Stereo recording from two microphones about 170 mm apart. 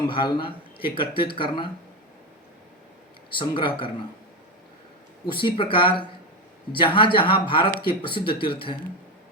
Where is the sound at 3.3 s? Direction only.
30° left (ahead or behind).